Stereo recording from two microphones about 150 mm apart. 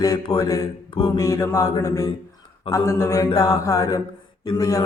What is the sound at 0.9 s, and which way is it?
Mantra, 35° left (ahead or behind).